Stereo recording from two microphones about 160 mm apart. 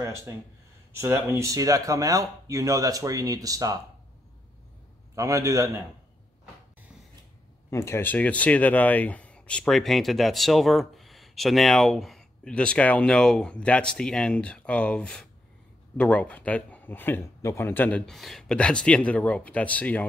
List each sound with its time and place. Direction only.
0.0 s speech: 15° right (ahead or behind)
5.1 s speech: 20° right (ahead or behind)
7.7 s speech: 15° left (ahead or behind)